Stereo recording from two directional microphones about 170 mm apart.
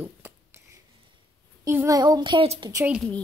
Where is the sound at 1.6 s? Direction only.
15° right (ahead or behind).